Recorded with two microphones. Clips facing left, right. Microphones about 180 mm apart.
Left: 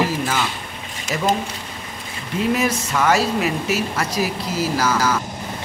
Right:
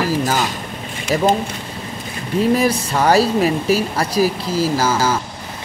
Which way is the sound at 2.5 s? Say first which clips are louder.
Right 2 dB; 35° right (ahead or behind).